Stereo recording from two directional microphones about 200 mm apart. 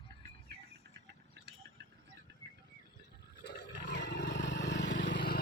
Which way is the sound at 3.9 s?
60° left (ahead or behind).